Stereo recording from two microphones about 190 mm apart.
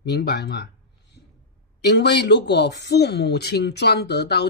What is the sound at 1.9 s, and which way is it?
Speech, 65° left (ahead or behind).